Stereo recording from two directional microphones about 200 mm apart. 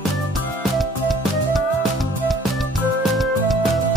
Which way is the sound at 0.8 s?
Centre (ahead or behind).